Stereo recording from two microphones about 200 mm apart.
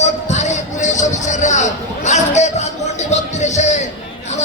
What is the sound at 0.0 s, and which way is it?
Music, 35° left (ahead or behind).